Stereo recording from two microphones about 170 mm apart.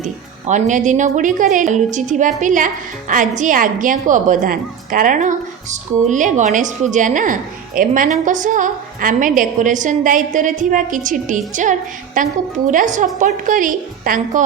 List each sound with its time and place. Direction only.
0.0 s speech: 45° right (ahead or behind)